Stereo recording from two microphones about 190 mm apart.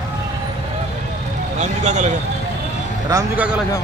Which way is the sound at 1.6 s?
40° right (ahead or behind).